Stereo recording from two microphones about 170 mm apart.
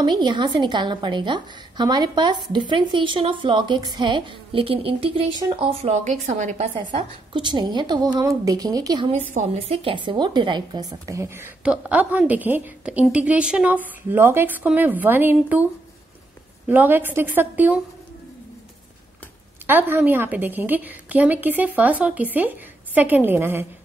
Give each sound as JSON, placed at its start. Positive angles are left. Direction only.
{"t": 0.0, "sound": "a woman's voice", "side_deg": -25}
{"t": 7.3, "sound": "a woman's voice", "side_deg": -25}
{"t": 9.3, "sound": "a woman's voice", "side_deg": -40}
{"t": 19.6, "sound": "a woman's voice", "side_deg": -10}